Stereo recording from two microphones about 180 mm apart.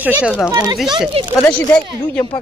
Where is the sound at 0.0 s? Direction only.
10° right (ahead or behind).